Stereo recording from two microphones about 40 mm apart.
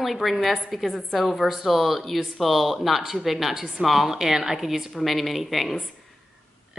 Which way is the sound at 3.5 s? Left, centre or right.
Centre.